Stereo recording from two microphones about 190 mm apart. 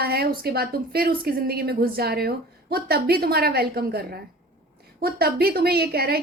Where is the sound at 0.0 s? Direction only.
55° right (ahead or behind).